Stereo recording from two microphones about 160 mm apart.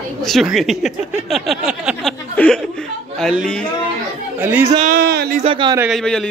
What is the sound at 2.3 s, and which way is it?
Chuckle, 5° left (ahead or behind).